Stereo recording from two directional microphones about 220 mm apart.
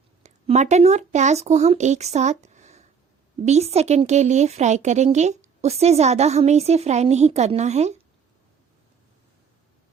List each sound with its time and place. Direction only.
0.2 s speech: 30° right (ahead or behind)